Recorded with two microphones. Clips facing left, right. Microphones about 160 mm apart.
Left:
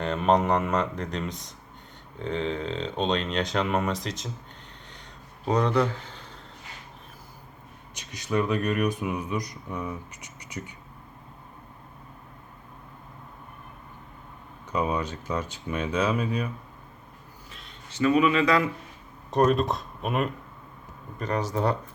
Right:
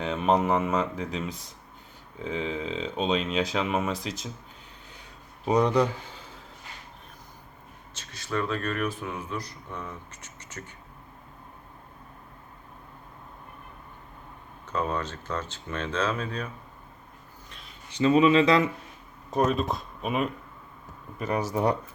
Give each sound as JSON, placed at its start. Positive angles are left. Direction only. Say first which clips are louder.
{"t": 0.0, "sound": "speech", "louder": "left 1 dB", "side_deg": 0}
{"t": 5.5, "sound": "speech", "louder": "right 1 dB", "side_deg": -10}
{"t": 7.9, "sound": "speech", "louder": "left 4 dB", "side_deg": 15}
{"t": 14.7, "sound": "speech", "louder": "left 2 dB", "side_deg": 10}
{"t": 17.5, "sound": "a sound", "louder": "left 1 dB", "side_deg": 0}
{"t": 17.8, "sound": "speech", "louder": "right 2 dB", "side_deg": -20}
{"t": 19.3, "sound": "speech", "louder": "left 3 dB", "side_deg": 0}